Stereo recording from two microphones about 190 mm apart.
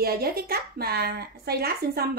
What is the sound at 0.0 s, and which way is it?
A woman's voice, 55° right (ahead or behind).